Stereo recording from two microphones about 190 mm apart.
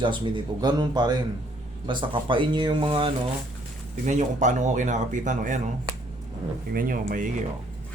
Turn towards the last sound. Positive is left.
turn(degrees=-45)  # may be behind; listen again after turning